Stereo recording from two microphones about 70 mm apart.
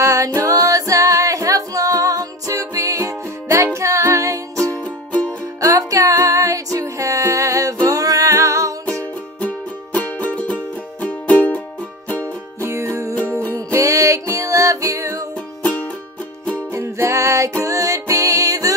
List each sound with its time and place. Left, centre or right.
0.0 s music: right
4.8 s music: centre
5.6 s music: right
9.9 s music: left
12.6 s music: right
15.6 s music: centre
16.7 s music: right